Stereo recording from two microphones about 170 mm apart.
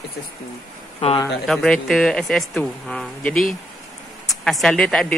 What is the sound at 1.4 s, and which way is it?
A woman's voice, 5° left (ahead or behind).